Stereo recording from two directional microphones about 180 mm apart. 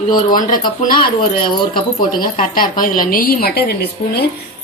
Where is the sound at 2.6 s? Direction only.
50° left (ahead or behind).